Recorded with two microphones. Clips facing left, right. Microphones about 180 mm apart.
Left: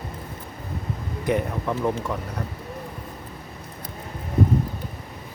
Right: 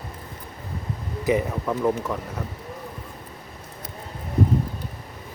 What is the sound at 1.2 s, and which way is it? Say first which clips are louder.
Speech: right 2 dB; centre (ahead or behind).